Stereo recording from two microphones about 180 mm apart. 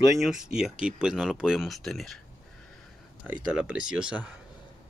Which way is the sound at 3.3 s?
5° right (ahead or behind).